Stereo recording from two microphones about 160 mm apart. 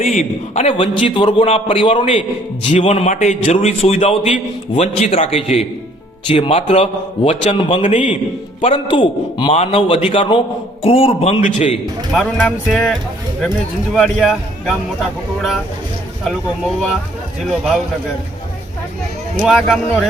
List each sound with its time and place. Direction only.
0.0 s a man's voice: 45° left (ahead or behind)
12.1 s speech: 5° left (ahead or behind)
17.4 s speech: centre (ahead or behind)
19.4 s speech: centre (ahead or behind)